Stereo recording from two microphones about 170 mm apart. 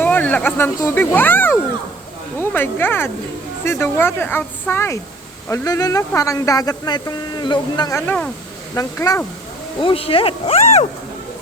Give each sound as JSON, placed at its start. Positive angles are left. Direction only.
{"t": 0.0, "sound": "speech", "side_deg": 10}
{"t": 9.8, "sound": "speech", "side_deg": 35}